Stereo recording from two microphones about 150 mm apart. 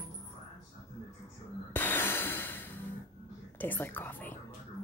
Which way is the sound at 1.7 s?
15° left (ahead or behind).